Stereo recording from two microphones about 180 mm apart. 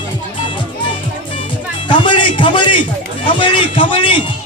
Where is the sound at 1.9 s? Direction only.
25° left (ahead or behind).